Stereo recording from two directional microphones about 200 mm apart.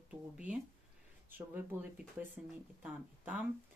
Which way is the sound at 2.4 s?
5° right (ahead or behind).